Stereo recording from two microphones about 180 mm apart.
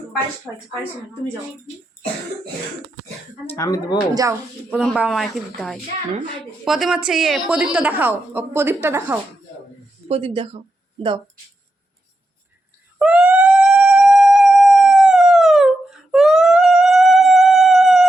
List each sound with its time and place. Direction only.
3.5 s speech: 20° left (ahead or behind)
4.1 s speech: 20° right (ahead or behind)
4.7 s a woman's voice: 5° left (ahead or behind); by 9.1 s 15° right (ahead or behind)
10.1 s speech: 30° right (ahead or behind)
13.0 s howl: 5° right (ahead or behind)